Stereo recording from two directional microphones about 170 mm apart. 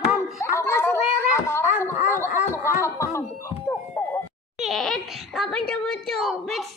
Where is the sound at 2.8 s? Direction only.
15° left (ahead or behind).